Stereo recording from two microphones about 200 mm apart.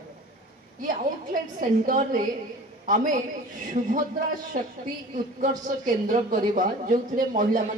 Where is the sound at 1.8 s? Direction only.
40° right (ahead or behind).